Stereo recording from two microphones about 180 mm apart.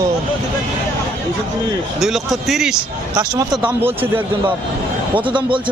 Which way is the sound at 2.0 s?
Centre (ahead or behind).